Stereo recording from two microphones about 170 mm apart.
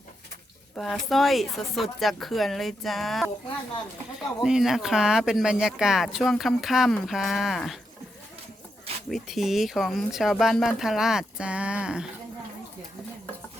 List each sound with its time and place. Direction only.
0.8 s speech: centre (ahead or behind)
4.4 s speech: centre (ahead or behind)
9.0 s speech: centre (ahead or behind)